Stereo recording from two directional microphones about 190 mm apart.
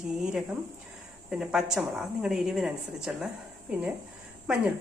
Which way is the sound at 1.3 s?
5° right (ahead or behind).